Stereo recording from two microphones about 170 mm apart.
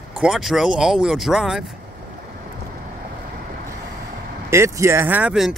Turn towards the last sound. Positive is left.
turn(degrees=-5)  # may be behind; listen again after turning